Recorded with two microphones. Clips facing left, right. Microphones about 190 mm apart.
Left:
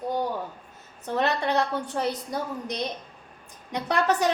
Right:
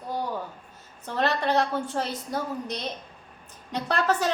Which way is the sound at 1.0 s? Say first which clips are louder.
Even; 15° left (ahead or behind).